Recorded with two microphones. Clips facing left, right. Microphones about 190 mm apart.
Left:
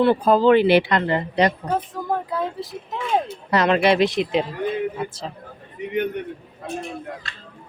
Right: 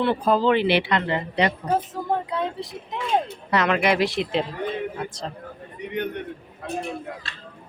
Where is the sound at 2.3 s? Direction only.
Centre (ahead or behind).